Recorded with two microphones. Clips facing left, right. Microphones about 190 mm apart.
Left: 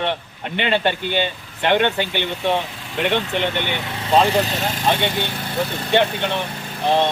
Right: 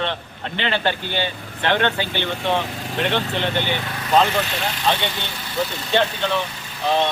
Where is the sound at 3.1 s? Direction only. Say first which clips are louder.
Left 2 dB; 15° left (ahead or behind).